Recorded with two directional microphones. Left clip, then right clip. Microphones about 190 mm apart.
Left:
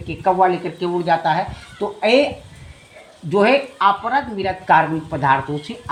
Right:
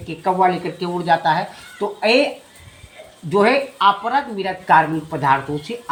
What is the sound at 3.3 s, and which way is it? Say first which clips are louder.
Speech: even; 15° left (ahead or behind).